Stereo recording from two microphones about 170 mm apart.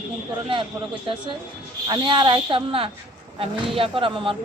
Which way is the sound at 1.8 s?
30° right (ahead or behind).